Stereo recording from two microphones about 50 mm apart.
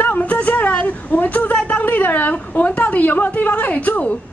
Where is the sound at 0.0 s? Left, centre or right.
Left.